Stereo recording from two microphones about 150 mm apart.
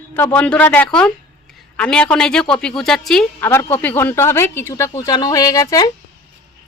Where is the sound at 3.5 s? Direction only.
15° left (ahead or behind).